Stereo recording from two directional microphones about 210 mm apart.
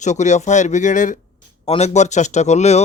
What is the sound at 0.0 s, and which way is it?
Speech, 35° left (ahead or behind).